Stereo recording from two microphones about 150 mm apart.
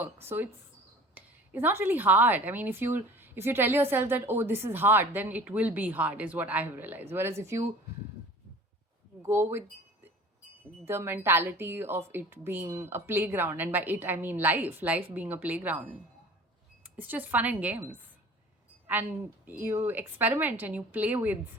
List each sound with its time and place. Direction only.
0.0 s a woman's voice: 15° right (ahead or behind)
9.2 s a woman's voice: 15° right (ahead or behind)